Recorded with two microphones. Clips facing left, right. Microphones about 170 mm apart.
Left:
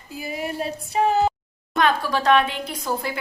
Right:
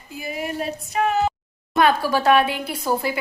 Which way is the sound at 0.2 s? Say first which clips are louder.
Even; 35° left (ahead or behind).